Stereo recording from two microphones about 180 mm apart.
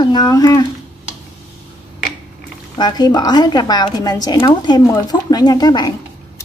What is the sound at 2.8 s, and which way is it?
Speech, 20° left (ahead or behind).